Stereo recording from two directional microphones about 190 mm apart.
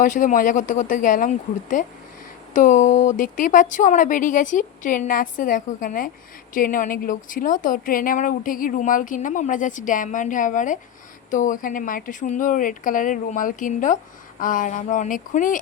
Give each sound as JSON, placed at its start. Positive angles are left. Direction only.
{"t": 0.0, "sound": "speech", "side_deg": 45}